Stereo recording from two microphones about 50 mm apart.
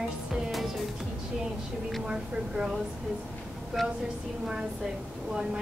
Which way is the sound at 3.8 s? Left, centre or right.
Centre.